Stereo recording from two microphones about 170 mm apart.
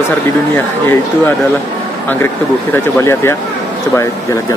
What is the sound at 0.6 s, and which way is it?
Speech, 10° left (ahead or behind).